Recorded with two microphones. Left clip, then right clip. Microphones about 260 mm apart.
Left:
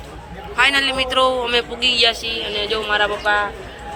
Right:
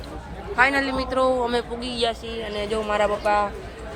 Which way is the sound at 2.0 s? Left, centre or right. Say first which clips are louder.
Left 8 dB; right.